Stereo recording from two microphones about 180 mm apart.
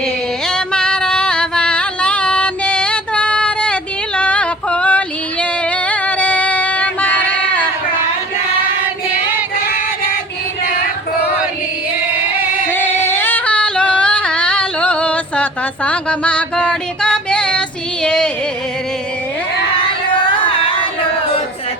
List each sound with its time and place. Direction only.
0.5 s music: 5° left (ahead or behind)
5.9 s female singing: 10° left (ahead or behind)
12.7 s singing: 10° left (ahead or behind)
18.0 s music: 5° left (ahead or behind)
20.5 s a sound: 30° left (ahead or behind)